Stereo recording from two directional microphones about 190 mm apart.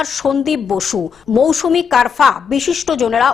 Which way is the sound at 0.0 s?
Centre (ahead or behind).